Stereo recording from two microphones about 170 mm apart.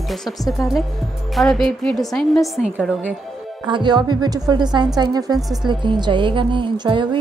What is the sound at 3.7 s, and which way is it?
A woman's voice, 25° right (ahead or behind).